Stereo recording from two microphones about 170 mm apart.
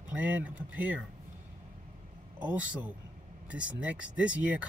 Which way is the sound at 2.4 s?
10° right (ahead or behind).